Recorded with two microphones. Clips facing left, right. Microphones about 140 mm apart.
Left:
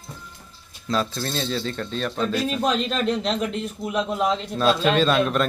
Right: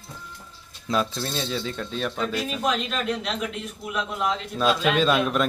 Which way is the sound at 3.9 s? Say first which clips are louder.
Left 5 dB; 35° left (ahead or behind).